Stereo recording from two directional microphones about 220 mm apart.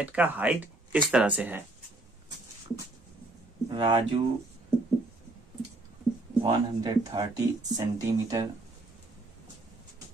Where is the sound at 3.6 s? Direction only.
20° right (ahead or behind).